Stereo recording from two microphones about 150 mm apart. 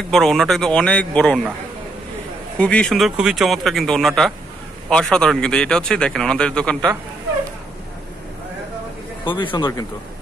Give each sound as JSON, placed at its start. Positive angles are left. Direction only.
{"t": 0.1, "sound": "speech", "side_deg": 0}
{"t": 2.5, "sound": "speech", "side_deg": 5}
{"t": 9.2, "sound": "a man's voice", "side_deg": 35}